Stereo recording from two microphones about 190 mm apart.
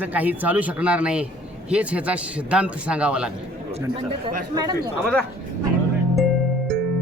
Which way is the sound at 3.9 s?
30° right (ahead or behind).